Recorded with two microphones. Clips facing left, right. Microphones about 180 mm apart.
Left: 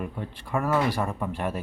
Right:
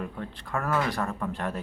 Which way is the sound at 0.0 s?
5° left (ahead or behind).